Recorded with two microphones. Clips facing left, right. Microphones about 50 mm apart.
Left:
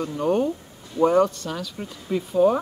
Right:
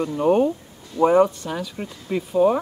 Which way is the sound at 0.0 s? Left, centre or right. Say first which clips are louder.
Right 4 dB; centre.